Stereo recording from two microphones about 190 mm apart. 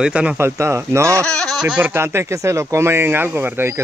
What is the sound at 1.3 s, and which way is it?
Speech, 5° left (ahead or behind).